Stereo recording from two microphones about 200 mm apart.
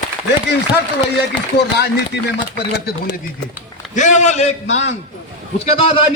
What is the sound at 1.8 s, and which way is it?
Speech, 55° left (ahead or behind).